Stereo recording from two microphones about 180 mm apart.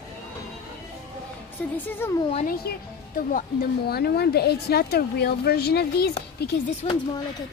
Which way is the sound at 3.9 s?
60° left (ahead or behind).